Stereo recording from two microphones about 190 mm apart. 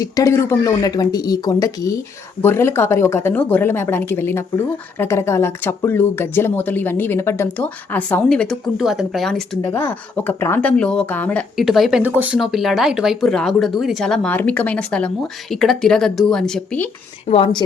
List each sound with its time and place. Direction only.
0.0 s speech: 15° left (ahead or behind); by 9.4 s centre (ahead or behind)
9.6 s speech: 10° left (ahead or behind)
17.2 s speech: 30° left (ahead or behind)